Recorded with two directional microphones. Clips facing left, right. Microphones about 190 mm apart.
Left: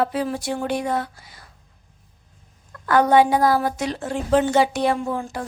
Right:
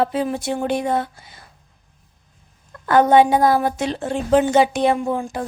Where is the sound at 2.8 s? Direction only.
25° right (ahead or behind).